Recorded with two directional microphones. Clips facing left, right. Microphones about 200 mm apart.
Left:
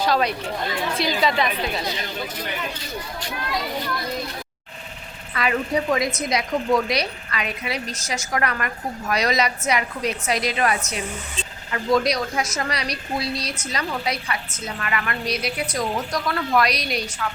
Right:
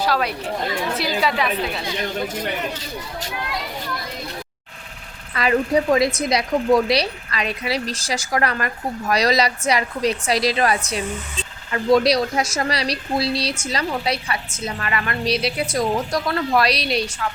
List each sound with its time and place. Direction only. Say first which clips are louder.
0.0 s a woman's voice: even; 5° right (ahead or behind)
5.4 s a woman's voice: right 4 dB; 35° right (ahead or behind)